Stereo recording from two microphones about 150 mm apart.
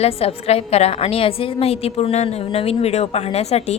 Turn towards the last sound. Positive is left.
turn(degrees=45)  # may be behind; listen again after turning